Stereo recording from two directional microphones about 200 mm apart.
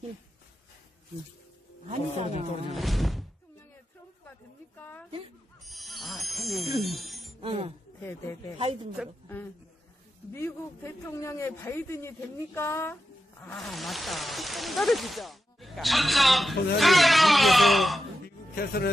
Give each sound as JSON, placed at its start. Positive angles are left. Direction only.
{"t": 1.9, "sound": "speech", "side_deg": -30}
{"t": 2.7, "sound": "speech", "side_deg": 0}
{"t": 4.7, "sound": "a sound", "side_deg": 10}
{"t": 5.7, "sound": "wind chime", "side_deg": 0}
{"t": 6.8, "sound": "speech", "side_deg": 0}
{"t": 7.4, "sound": "speech", "side_deg": -30}
{"t": 8.0, "sound": "a man's voice", "side_deg": 10}
{"t": 10.3, "sound": "a man's voice", "side_deg": 10}
{"t": 18.2, "sound": "speech", "side_deg": 50}